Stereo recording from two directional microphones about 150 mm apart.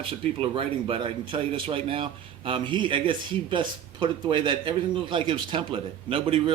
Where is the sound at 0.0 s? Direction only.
35° right (ahead or behind).